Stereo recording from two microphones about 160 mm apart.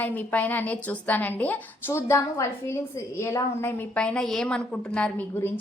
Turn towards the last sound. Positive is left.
turn(degrees=10)  # may be behind; listen again after turning